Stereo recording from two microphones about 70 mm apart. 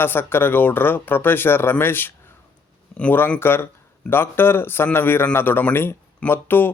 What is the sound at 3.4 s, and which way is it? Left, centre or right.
Speech, left.